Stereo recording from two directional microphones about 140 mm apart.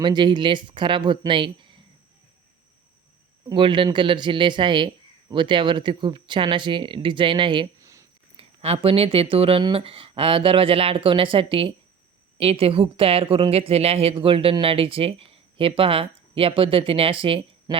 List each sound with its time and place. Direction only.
0.0 s speech: 30° right (ahead or behind)
3.5 s speech: 35° right (ahead or behind)
7.8 s a sound: 20° right (ahead or behind)
8.4 s speech: 45° right (ahead or behind)